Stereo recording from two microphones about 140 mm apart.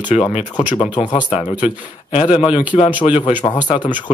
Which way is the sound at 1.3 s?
35° left (ahead or behind).